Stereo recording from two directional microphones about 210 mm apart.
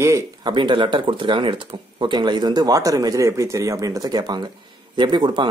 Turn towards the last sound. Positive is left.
turn(degrees=-20)  # may be behind; listen again after turning